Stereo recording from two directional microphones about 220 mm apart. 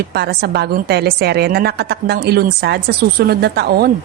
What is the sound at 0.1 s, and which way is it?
A woman's voice, 45° right (ahead or behind).